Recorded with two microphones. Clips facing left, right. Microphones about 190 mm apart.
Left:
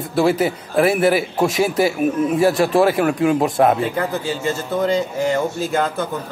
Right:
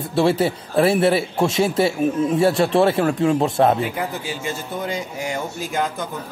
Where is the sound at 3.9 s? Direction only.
15° right (ahead or behind).